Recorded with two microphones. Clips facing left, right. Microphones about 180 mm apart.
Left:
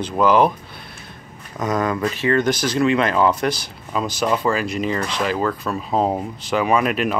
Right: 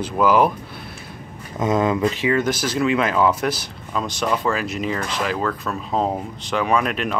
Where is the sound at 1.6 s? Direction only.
20° right (ahead or behind).